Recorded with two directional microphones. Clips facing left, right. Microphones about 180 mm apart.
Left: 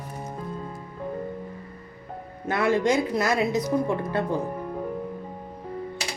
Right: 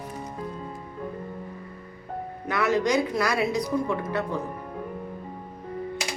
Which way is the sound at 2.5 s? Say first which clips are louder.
Left 1 dB; 25° left (ahead or behind).